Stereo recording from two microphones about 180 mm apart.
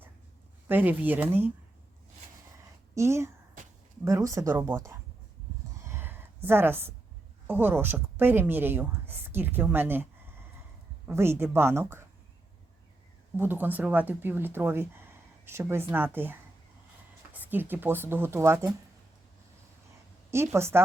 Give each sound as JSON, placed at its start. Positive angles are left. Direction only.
{"t": 0.7, "sound": "speech", "side_deg": -10}
{"t": 2.9, "sound": "speech", "side_deg": -15}
{"t": 5.8, "sound": "a sound", "side_deg": -15}
{"t": 7.4, "sound": "a woman's voice", "side_deg": -10}
{"t": 13.3, "sound": "speech", "side_deg": -10}
{"t": 20.3, "sound": "speech", "side_deg": -15}